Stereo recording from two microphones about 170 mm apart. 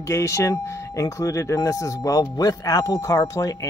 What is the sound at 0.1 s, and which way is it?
Speech, 15° left (ahead or behind).